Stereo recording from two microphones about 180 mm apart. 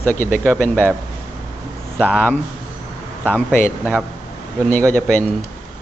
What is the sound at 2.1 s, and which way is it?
Speech, 10° left (ahead or behind).